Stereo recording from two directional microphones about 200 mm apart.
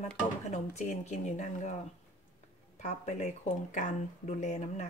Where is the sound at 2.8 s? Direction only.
35° left (ahead or behind).